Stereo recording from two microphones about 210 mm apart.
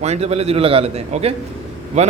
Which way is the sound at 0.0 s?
30° right (ahead or behind).